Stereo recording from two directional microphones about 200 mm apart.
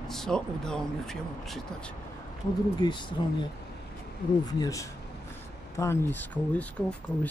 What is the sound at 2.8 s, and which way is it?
Speech, 20° left (ahead or behind).